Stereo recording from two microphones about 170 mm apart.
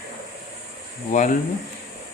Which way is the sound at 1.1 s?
45° left (ahead or behind).